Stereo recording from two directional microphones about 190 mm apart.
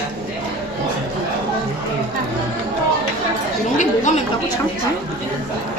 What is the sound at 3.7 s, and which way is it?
Speech, 40° left (ahead or behind).